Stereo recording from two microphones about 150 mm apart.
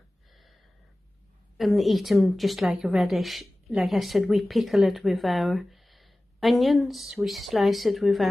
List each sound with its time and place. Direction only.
1.6 s a woman's voice: centre (ahead or behind)